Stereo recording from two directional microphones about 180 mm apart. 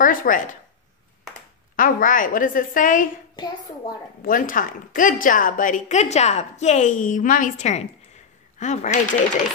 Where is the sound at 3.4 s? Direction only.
25° left (ahead or behind).